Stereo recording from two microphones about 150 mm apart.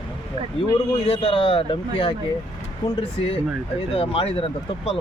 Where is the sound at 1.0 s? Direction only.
40° left (ahead or behind).